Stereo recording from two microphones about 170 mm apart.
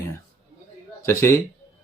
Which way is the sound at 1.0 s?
15° left (ahead or behind).